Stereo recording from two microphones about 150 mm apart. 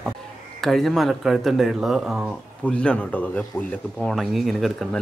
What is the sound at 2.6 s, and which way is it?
Speech, 5° left (ahead or behind).